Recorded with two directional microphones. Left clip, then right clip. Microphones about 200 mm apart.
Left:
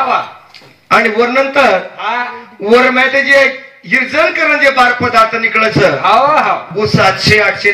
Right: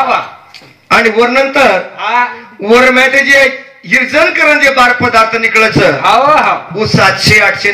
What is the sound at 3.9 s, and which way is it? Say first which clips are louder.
A man's voice: right 2 dB; 40° right (ahead or behind).